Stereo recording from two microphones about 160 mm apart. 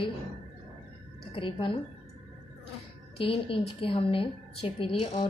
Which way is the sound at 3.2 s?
35° left (ahead or behind).